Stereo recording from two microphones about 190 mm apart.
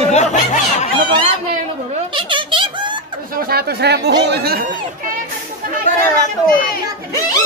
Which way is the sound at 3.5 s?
55° right (ahead or behind).